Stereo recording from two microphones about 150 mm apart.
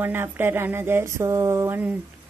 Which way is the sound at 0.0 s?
15° right (ahead or behind).